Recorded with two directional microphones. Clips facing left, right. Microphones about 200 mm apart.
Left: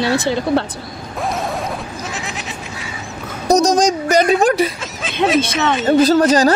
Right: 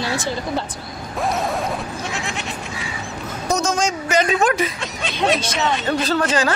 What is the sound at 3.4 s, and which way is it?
A woman's voice, 35° left (ahead or behind).